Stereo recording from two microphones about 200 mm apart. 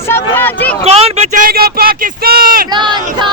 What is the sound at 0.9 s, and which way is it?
Speech, 30° right (ahead or behind).